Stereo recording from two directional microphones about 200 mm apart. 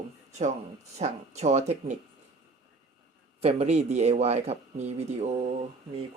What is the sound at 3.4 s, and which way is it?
Speech, 35° right (ahead or behind).